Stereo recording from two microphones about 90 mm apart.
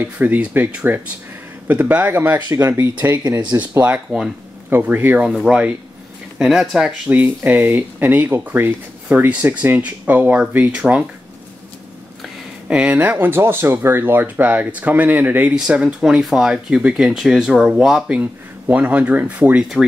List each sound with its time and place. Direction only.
0.0 s speech: 20° right (ahead or behind)
5.2 s speech: 10° right (ahead or behind)
7.1 s speech: 20° right (ahead or behind)
12.6 s speech: 15° right (ahead or behind)